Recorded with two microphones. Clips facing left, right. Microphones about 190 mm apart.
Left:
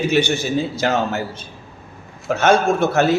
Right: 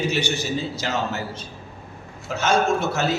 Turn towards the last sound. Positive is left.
turn(degrees=55)  # may be behind; listen again after turning